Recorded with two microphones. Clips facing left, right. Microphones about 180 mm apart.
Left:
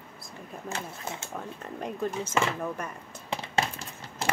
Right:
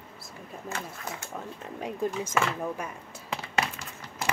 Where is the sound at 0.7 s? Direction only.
25° left (ahead or behind).